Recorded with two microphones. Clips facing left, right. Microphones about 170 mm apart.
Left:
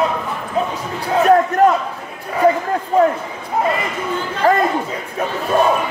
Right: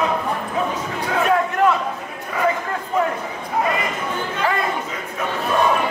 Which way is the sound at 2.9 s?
30° left (ahead or behind).